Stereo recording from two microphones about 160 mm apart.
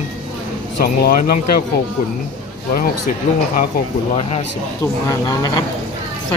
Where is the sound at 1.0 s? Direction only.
65° left (ahead or behind).